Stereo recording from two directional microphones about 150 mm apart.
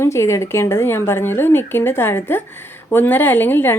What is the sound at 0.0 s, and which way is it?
A woman's voice, 20° left (ahead or behind).